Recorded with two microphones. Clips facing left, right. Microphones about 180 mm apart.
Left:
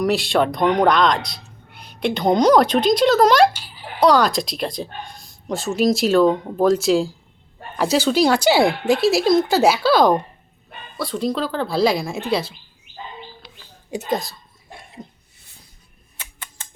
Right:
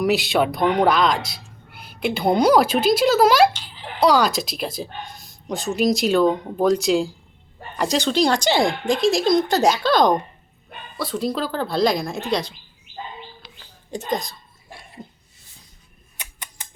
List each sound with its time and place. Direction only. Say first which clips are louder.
0.0 s speech: left 1 dB; centre (ahead or behind)
3.5 s a sound: even; 10° left (ahead or behind)
4.0 s speech: left 2 dB; centre (ahead or behind)
13.9 s speech: left 2 dB; 5° left (ahead or behind)
15.0 s a sound: left 2 dB; 5° right (ahead or behind)
16.1 s tick: even; 15° right (ahead or behind)